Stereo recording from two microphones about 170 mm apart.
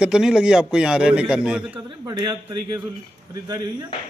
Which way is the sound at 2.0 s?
25° right (ahead or behind).